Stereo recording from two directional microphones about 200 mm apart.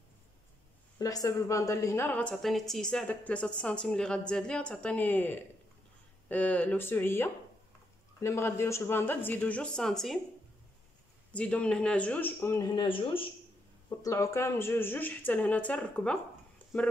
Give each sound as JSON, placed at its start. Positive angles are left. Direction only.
{"t": 0.9, "sound": "a woman's voice", "side_deg": 15}
{"t": 11.3, "sound": "speech", "side_deg": 5}
{"t": 12.8, "sound": "a woman's voice", "side_deg": 25}
{"t": 13.8, "sound": "speech", "side_deg": 15}